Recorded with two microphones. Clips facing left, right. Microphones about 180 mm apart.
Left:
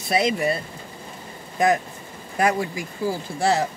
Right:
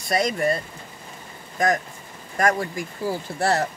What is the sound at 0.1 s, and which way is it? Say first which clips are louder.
Speech: left 1 dB; 5° left (ahead or behind).